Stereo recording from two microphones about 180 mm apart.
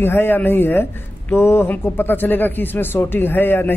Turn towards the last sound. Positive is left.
turn(degrees=10)  # may be behind; listen again after turning